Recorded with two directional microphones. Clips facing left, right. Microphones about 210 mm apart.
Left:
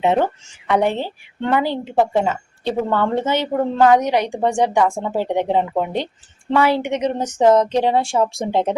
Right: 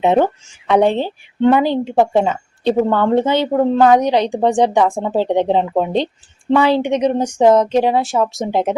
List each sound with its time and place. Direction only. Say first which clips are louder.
0.0 s speech: right 4 dB; 20° right (ahead or behind)